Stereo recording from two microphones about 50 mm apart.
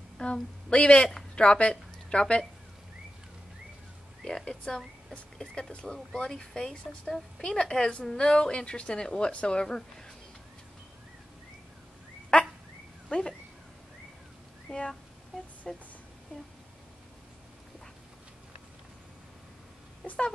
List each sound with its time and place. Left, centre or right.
0.2 s a woman's voice: left
4.2 s a woman's voice: centre
7.1 s a woman's voice: centre
12.3 s a sound: left
14.7 s a sound: centre
15.7 s a woman's voice: centre